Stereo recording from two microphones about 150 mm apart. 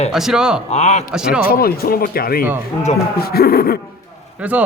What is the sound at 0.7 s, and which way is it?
Speech, 50° left (ahead or behind).